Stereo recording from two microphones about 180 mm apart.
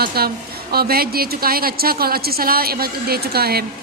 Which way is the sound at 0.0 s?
60° right (ahead or behind).